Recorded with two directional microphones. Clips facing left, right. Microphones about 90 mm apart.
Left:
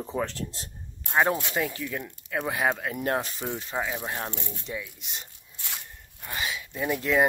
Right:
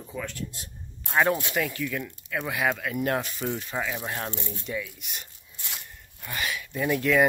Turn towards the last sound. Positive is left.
turn(degrees=25)  # may be behind; listen again after turning